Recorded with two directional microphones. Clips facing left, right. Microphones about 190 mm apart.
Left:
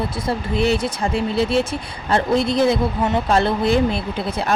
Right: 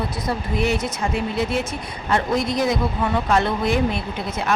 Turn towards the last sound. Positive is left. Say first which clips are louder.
# left 3 dB
turn(degrees=30)  # may be behind; listen again after turning